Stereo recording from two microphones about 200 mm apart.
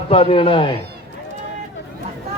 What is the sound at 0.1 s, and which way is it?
Speech, 30° left (ahead or behind).